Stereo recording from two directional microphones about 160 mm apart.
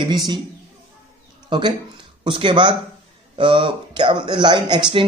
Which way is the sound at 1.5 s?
30° right (ahead or behind).